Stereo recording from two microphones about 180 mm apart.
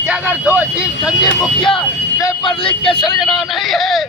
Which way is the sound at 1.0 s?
25° left (ahead or behind).